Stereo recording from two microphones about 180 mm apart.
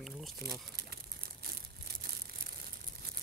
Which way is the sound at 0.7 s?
60° right (ahead or behind).